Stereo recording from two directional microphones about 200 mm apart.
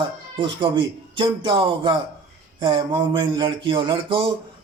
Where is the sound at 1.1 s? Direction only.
25° right (ahead or behind).